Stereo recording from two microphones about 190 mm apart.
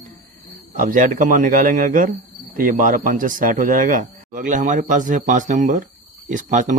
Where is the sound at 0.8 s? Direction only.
45° right (ahead or behind).